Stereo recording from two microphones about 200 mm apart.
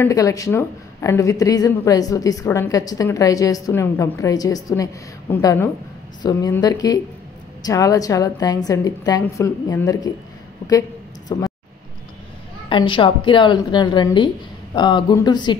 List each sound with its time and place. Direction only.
0.0 s a woman's voice: 15° left (ahead or behind)
11.2 s speech: 15° left (ahead or behind)
12.6 s a woman's voice: 25° left (ahead or behind)